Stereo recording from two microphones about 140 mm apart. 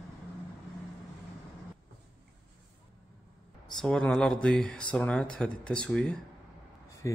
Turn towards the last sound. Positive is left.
turn(degrees=20)  # may be behind; listen again after turning